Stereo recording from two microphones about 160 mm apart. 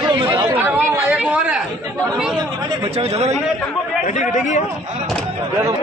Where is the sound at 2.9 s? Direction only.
40° right (ahead or behind).